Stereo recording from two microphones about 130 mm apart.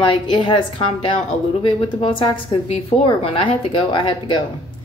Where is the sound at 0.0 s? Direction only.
40° left (ahead or behind).